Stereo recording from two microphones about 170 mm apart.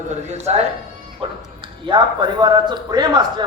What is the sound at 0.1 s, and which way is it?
A man's voice, 40° right (ahead or behind).